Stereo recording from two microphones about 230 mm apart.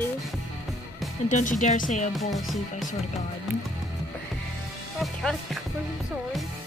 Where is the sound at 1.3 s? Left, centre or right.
Left.